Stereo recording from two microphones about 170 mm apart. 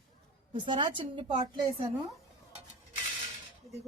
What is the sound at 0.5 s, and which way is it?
A woman's voice, 30° right (ahead or behind).